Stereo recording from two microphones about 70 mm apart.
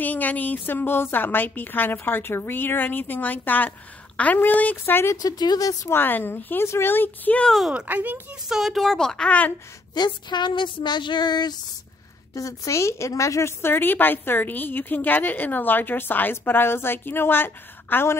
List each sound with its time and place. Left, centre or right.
0.0 s a woman's voice: left
5.1 s a woman's voice: left
5.9 s a woman's voice: left
7.8 s speech: right
8.5 s speech: centre
9.9 s speech: left
12.4 s a woman's voice: left